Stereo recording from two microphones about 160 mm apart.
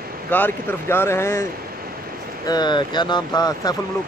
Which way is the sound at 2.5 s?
25° left (ahead or behind).